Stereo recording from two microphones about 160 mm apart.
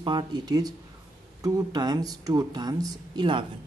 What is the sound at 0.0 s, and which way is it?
Speech, 30° right (ahead or behind).